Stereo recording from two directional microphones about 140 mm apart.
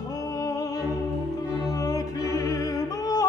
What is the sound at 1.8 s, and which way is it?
Music, 25° left (ahead or behind).